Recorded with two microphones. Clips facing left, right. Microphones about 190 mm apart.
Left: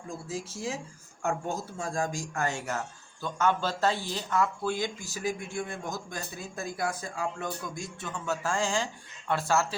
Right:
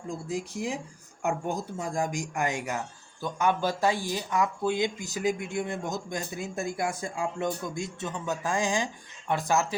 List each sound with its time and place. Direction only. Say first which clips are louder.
0.3 s speech: right 3 dB; 15° right (ahead or behind)